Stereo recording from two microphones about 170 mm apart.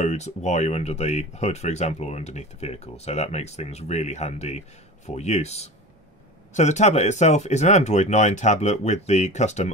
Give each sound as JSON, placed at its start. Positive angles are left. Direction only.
{"t": 0.0, "sound": "speech", "side_deg": 40}